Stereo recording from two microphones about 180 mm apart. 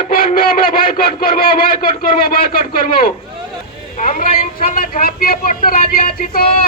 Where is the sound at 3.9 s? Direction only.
40° left (ahead or behind).